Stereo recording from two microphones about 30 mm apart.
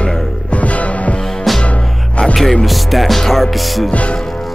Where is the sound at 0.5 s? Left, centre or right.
Left.